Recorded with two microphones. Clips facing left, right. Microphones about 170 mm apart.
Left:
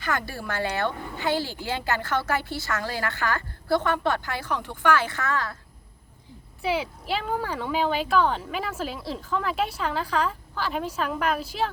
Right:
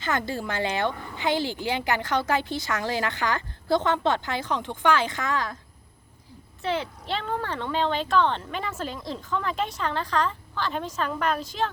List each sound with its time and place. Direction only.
0.0 s speech: 20° right (ahead or behind)
6.6 s speech: 10° left (ahead or behind)